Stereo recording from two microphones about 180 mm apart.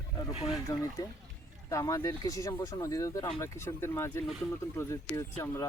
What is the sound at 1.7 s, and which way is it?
Speech, 20° left (ahead or behind).